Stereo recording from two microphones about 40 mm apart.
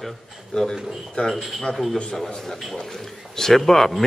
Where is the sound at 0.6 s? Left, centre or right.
Centre.